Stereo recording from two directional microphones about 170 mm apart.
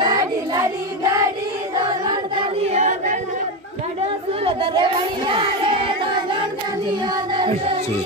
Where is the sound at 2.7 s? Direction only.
45° right (ahead or behind).